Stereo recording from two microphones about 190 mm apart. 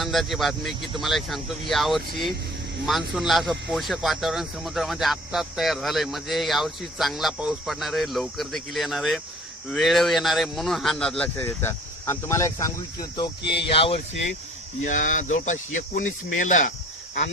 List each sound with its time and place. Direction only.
0.0 s speech: centre (ahead or behind); by 13.3 s 20° left (ahead or behind)
13.4 s speech: 60° left (ahead or behind)
13.7 s speech: 30° left (ahead or behind)
14.8 s speech: 40° left (ahead or behind)